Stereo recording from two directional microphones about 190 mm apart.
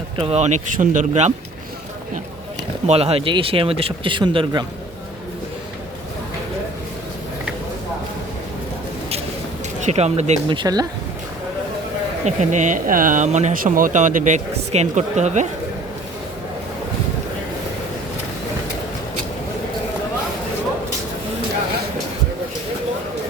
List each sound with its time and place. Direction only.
0.2 s speech: 35° right (ahead or behind)
2.8 s speech: 30° right (ahead or behind)
9.8 s speech: 35° right (ahead or behind)
10.6 s speech: 20° right (ahead or behind)
12.2 s speech: 40° right (ahead or behind)